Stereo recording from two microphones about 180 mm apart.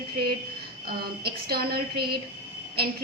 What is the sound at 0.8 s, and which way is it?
A woman's voice, 60° right (ahead or behind).